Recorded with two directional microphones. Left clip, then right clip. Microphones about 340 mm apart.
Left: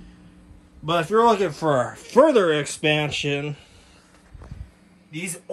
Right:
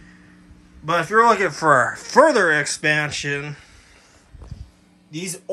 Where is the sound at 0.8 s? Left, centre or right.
Centre.